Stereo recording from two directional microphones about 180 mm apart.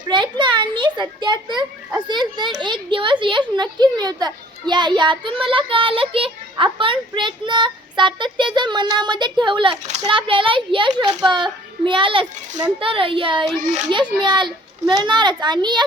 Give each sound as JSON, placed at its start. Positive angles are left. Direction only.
{"t": 0.1, "sound": "a child's voice", "side_deg": -25}